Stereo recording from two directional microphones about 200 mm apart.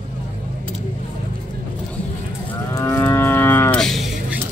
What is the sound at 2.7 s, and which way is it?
Livestock, 10° left (ahead or behind).